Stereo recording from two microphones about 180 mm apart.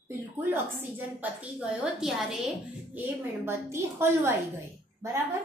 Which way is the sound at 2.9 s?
15° right (ahead or behind).